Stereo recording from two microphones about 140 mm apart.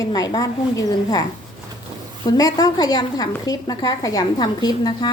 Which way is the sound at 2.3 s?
25° left (ahead or behind).